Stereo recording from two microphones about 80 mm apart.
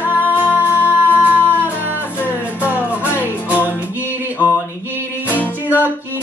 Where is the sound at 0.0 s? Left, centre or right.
Right.